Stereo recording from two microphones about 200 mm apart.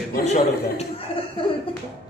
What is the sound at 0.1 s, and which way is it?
A man's voice, 40° left (ahead or behind).